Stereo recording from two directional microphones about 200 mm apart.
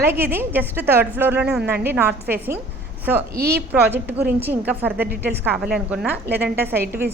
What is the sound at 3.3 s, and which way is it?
Speech, 50° right (ahead or behind).